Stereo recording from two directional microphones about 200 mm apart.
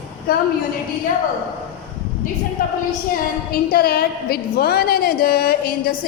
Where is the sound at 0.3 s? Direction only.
45° left (ahead or behind).